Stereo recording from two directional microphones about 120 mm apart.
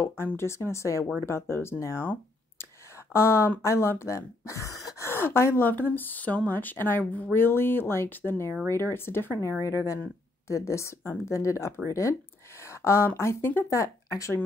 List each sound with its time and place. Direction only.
0.0 s speech: 20° left (ahead or behind)
10.5 s speech: 25° left (ahead or behind)